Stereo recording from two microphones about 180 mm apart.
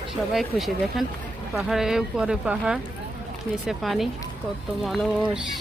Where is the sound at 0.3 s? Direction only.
Centre (ahead or behind).